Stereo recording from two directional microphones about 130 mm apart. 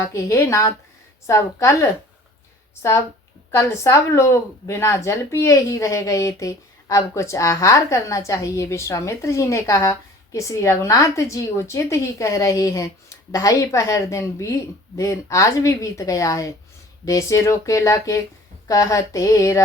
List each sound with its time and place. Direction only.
0.1 s speech: 25° left (ahead or behind)
3.5 s speech: 20° left (ahead or behind)